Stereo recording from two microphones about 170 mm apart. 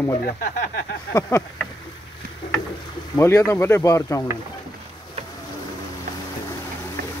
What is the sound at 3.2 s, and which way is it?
Speech, 15° left (ahead or behind).